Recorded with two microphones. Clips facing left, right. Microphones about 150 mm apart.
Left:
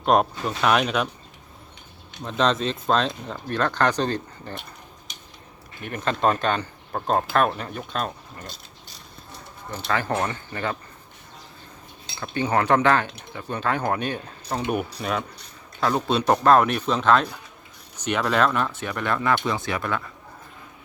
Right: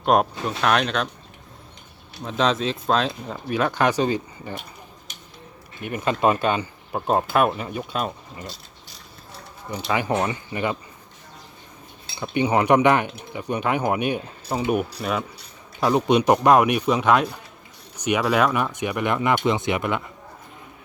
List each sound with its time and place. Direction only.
0.0 s speech: centre (ahead or behind)
2.2 s speech: centre (ahead or behind)
5.8 s speech: 10° right (ahead or behind)
9.9 s speech: 15° right (ahead or behind)
12.2 s speech: 15° right (ahead or behind)
15.8 s speech: 15° right (ahead or behind)